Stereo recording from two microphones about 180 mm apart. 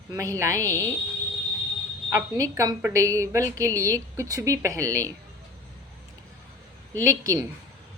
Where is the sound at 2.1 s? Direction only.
15° right (ahead or behind).